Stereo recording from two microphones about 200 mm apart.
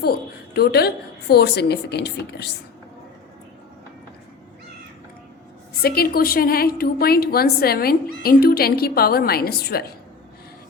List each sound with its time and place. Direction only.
0.0 s a woman's voice: 50° left (ahead or behind)
5.8 s a woman's voice: 50° left (ahead or behind)